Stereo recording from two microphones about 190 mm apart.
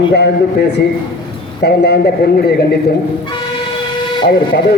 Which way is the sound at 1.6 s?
55° left (ahead or behind).